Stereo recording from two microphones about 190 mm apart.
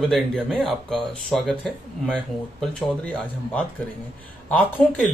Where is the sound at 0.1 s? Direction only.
Centre (ahead or behind).